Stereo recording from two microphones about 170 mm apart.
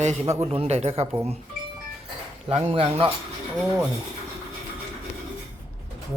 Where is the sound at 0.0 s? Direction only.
45° right (ahead or behind).